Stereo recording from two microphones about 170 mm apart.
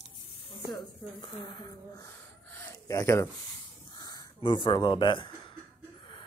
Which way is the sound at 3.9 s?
25° left (ahead or behind).